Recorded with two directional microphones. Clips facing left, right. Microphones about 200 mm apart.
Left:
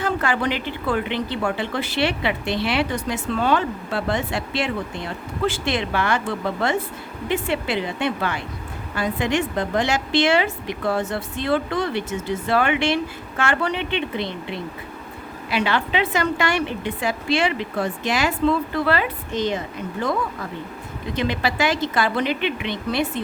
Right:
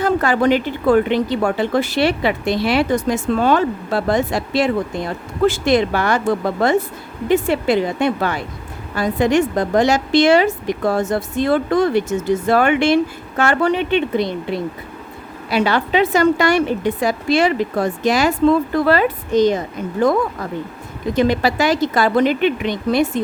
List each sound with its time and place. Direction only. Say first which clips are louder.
0.0 s a woman's voice: right 7 dB; 40° right (ahead or behind)